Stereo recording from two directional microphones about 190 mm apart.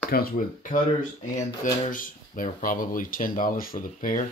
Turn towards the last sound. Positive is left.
turn(degrees=45)  # may be behind; listen again after turning